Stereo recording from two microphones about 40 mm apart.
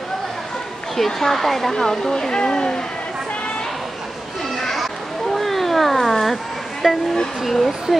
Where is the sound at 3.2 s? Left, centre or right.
Left.